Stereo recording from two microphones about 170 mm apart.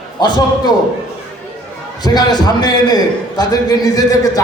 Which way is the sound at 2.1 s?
25° left (ahead or behind).